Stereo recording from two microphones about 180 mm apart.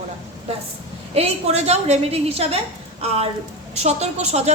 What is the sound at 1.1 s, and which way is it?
A woman's voice, 35° right (ahead or behind).